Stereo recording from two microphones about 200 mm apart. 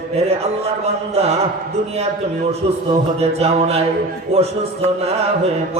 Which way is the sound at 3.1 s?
30° right (ahead or behind).